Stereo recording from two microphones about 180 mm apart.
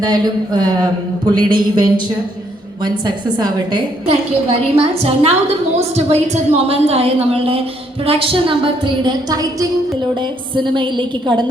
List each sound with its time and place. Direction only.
0.1 s a woman's voice: 25° right (ahead or behind)